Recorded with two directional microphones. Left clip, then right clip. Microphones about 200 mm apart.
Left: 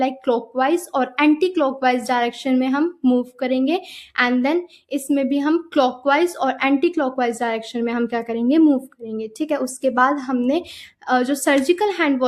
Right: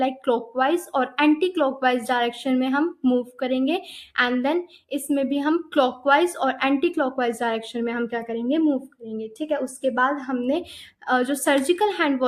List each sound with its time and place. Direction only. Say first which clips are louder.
0.3 s a woman's voice: left 3 dB; 20° left (ahead or behind)